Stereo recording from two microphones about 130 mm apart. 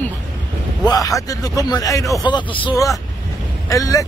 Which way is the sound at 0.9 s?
25° left (ahead or behind).